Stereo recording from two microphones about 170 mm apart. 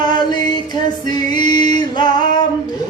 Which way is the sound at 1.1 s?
25° left (ahead or behind).